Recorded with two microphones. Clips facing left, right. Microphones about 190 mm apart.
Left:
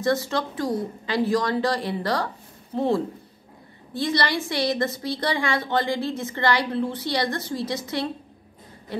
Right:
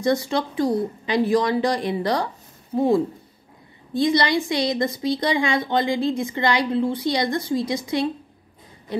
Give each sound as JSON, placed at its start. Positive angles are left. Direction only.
{"t": 0.0, "sound": "a woman's voice", "side_deg": -15}